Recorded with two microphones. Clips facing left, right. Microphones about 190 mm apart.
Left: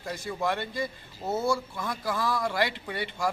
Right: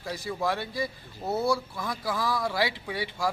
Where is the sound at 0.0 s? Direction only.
Centre (ahead or behind).